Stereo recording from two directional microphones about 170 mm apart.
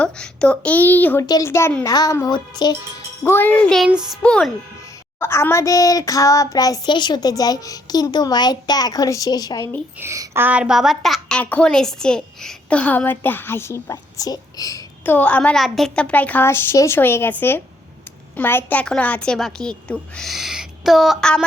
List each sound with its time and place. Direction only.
0.0 s a woman's voice: 5° left (ahead or behind); by 2.7 s 25° left (ahead or behind)
3.2 s a woman's voice: 10° left (ahead or behind)
10.0 s a woman's voice: 15° right (ahead or behind); by 21.4 s 5° left (ahead or behind)